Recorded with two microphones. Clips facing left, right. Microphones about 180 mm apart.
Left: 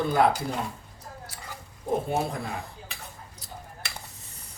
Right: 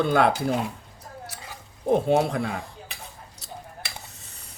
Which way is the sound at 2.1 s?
80° right.